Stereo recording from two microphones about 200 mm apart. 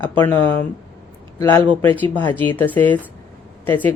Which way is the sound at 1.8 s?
10° left (ahead or behind).